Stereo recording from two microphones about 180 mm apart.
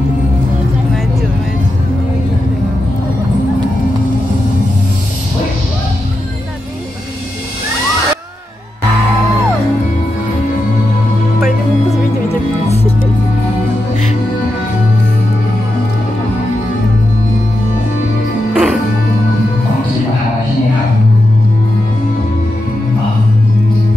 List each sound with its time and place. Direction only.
18.5 s music: 5° right (ahead or behind)